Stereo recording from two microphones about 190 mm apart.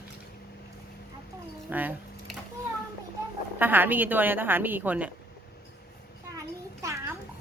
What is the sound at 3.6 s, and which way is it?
A woman's voice, 10° right (ahead or behind).